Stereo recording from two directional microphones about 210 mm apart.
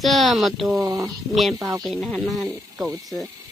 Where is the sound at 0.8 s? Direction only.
15° right (ahead or behind).